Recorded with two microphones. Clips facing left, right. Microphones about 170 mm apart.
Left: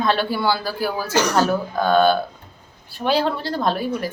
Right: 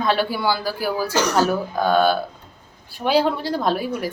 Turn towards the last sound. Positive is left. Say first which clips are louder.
# even
turn(degrees=-10)  # may be behind; listen again after turning